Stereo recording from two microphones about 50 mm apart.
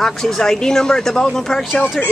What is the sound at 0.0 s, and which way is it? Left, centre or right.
Speech, centre.